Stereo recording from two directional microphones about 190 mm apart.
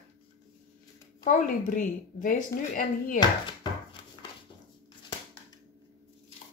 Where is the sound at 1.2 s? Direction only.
45° left (ahead or behind).